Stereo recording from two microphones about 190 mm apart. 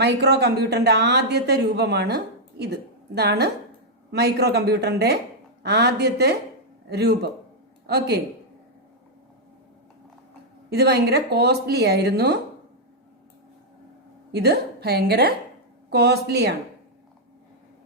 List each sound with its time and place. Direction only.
0.0 s a man's voice: 60° right (ahead or behind)
10.7 s a man's voice: 60° right (ahead or behind)
14.3 s a man's voice: 60° right (ahead or behind)